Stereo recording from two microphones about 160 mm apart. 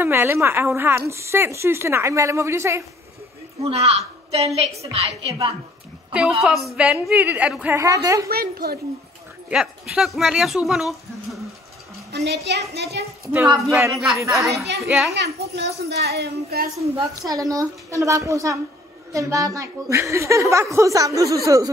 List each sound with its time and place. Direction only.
0.0 s a woman's voice: 15° right (ahead or behind)
3.6 s a woman's voice: 40° right (ahead or behind)
6.1 s a woman's voice: 5° right (ahead or behind); by 8.3 s 20° right (ahead or behind)
8.3 s a woman's voice: 70° right (ahead or behind)
9.5 s speech: 5° right (ahead or behind)
12.1 s speech: 90° right
13.3 s a woman's voice: 15° right (ahead or behind)
13.9 s speech: centre (ahead or behind)
15.1 s speech: 90° right
17.3 s a woman's voice: 20° right (ahead or behind)